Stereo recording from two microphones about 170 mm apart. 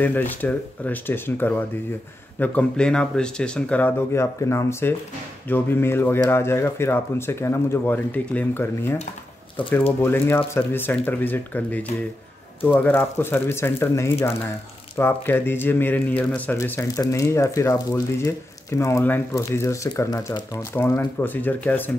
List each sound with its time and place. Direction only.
0.0 s speech: 10° left (ahead or behind)
10.0 s speech: 15° left (ahead or behind)